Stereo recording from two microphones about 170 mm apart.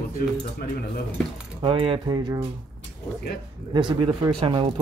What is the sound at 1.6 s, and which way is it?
Speech, 30° right (ahead or behind).